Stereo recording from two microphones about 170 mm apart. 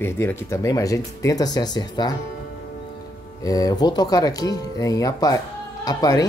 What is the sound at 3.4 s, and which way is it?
Speech, 20° left (ahead or behind).